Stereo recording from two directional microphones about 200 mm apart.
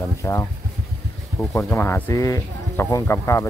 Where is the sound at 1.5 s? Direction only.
10° left (ahead or behind).